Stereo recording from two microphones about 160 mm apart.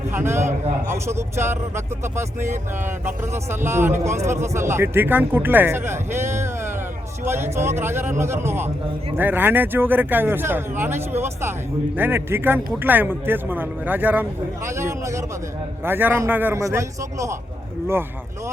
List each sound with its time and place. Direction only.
0.1 s speech: 15° right (ahead or behind)